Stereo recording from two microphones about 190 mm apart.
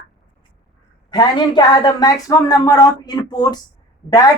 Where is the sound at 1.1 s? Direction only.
20° left (ahead or behind).